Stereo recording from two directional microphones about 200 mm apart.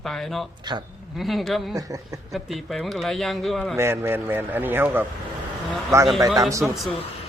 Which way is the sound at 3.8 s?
10° right (ahead or behind).